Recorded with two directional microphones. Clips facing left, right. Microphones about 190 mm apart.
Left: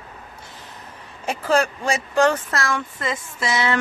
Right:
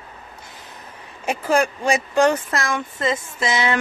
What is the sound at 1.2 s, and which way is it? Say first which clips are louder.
Speech: right 1 dB; 15° right (ahead or behind).